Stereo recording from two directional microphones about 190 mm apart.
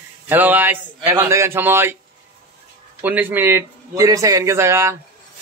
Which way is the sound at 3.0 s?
10° right (ahead or behind).